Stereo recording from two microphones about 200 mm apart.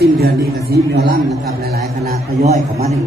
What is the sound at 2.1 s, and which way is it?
Speech, 35° right (ahead or behind).